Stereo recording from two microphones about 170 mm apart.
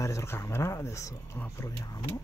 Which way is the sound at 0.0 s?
15° left (ahead or behind).